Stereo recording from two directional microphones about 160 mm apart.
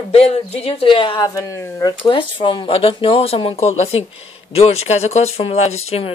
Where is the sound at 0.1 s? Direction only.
40° left (ahead or behind).